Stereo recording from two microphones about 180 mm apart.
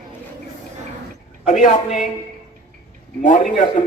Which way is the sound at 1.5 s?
45° left (ahead or behind).